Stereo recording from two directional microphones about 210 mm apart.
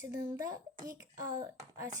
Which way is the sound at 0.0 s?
15° right (ahead or behind).